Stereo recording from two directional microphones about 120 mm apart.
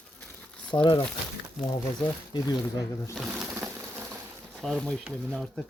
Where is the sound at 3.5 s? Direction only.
20° right (ahead or behind).